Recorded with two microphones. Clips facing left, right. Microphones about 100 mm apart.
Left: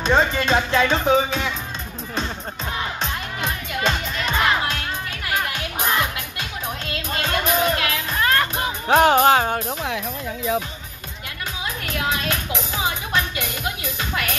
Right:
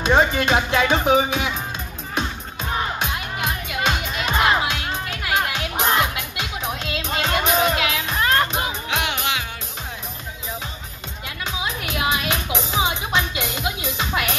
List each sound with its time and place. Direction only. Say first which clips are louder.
0.0 s speech: right 1 dB; 15° right (ahead or behind)
3.0 s music: right 1 dB; 10° right (ahead or behind)
8.8 s music: left 10 dB; 40° left (ahead or behind)
11.6 s music: right 1 dB; 15° right (ahead or behind)